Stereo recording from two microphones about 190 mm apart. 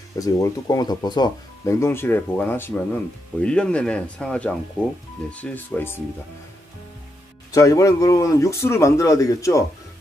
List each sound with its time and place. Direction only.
0.2 s speech: 20° left (ahead or behind)
7.5 s speech: 15° left (ahead or behind)